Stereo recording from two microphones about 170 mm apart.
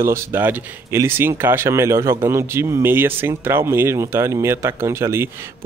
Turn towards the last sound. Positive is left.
turn(degrees=-15)  # may be behind; listen again after turning